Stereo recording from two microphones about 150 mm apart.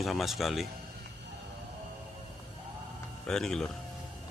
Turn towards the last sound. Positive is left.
turn(degrees=5)  # may be behind; listen again after turning